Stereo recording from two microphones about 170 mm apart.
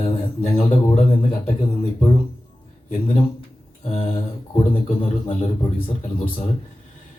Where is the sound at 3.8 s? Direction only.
35° left (ahead or behind).